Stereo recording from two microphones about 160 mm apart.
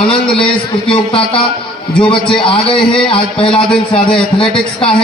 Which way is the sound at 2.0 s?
35° left (ahead or behind).